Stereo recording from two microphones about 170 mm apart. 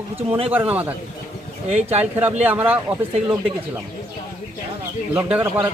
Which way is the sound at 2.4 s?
10° right (ahead or behind).